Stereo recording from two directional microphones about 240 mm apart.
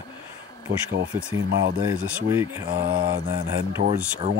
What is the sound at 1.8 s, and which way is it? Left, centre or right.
Speech, centre.